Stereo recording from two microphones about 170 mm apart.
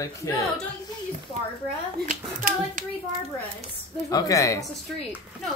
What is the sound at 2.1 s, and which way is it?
Speech, 55° right (ahead or behind).